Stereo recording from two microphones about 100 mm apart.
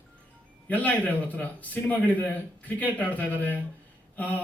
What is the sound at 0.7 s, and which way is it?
A man's voice, 15° left (ahead or behind).